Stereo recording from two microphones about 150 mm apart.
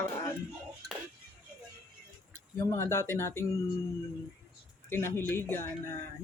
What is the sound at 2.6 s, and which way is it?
Speech, 20° left (ahead or behind).